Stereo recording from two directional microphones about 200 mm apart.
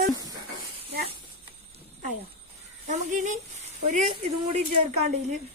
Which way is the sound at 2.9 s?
40° right (ahead or behind).